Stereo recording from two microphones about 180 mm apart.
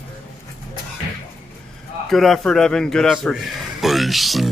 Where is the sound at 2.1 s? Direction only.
Centre (ahead or behind).